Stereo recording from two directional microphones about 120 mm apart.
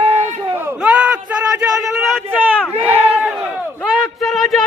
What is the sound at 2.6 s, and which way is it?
Crowd, 15° left (ahead or behind).